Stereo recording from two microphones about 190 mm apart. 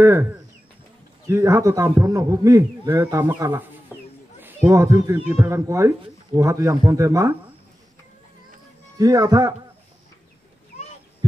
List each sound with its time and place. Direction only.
0.0 s a man's voice: 10° right (ahead or behind)
3.9 s a sound: 10° right (ahead or behind)
4.4 s a man's voice: 10° right (ahead or behind)
8.9 s a man's voice: 20° right (ahead or behind)